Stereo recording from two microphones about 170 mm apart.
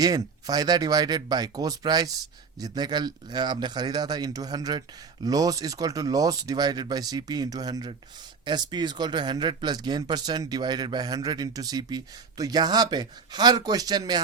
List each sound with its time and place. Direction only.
0.0 s speech: 20° right (ahead or behind)